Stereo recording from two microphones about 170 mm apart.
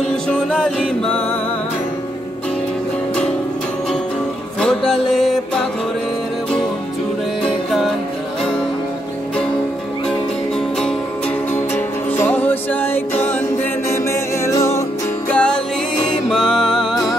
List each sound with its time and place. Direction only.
0.0 s music: 5° left (ahead or behind)
4.6 s music: 5° left (ahead or behind)
12.1 s music: 10° left (ahead or behind)